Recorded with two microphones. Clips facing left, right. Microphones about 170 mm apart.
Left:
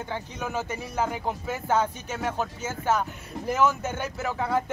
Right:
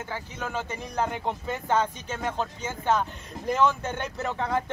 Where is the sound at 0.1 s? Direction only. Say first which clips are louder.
Left 2 dB; 10° left (ahead or behind).